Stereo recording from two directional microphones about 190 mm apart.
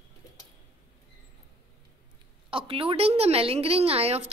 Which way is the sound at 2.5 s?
30° right (ahead or behind).